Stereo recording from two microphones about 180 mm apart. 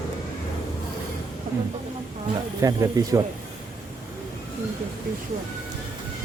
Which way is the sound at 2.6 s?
20° right (ahead or behind).